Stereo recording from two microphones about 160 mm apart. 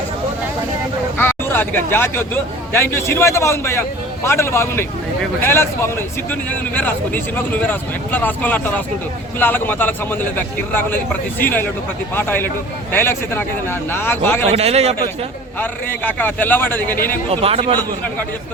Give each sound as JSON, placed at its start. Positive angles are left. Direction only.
{"t": 1.1, "sound": "speech", "side_deg": 15}
{"t": 14.5, "sound": "speech", "side_deg": -40}
{"t": 15.5, "sound": "speech", "side_deg": 10}
{"t": 17.4, "sound": "speech", "side_deg": -40}
{"t": 17.7, "sound": "speech", "side_deg": 10}